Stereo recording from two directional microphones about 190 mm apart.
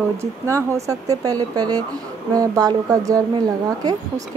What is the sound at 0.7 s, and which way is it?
Speech, 15° right (ahead or behind).